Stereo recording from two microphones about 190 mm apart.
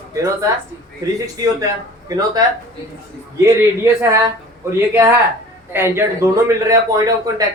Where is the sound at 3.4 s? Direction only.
15° right (ahead or behind).